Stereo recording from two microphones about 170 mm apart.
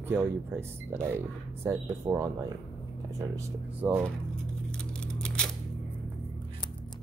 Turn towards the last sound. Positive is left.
turn(degrees=5)  # may be behind; listen again after turning